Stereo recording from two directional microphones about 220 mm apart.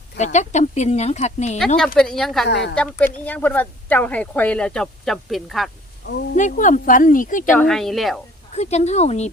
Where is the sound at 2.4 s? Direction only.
50° left (ahead or behind).